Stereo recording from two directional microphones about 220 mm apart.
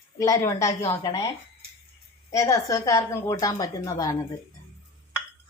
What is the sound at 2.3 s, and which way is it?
Speech, 15° left (ahead or behind).